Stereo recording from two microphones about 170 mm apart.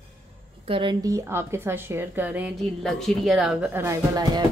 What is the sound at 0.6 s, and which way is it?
Speech, 30° right (ahead or behind).